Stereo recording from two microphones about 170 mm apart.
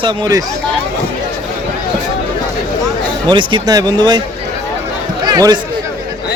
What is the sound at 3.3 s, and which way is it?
Speech, 30° right (ahead or behind).